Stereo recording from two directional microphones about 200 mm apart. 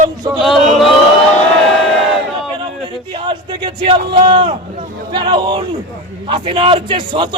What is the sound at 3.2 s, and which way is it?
A man's voice, 25° right (ahead or behind).